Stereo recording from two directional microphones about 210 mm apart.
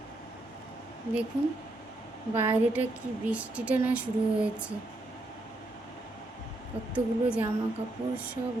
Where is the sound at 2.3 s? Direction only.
10° right (ahead or behind).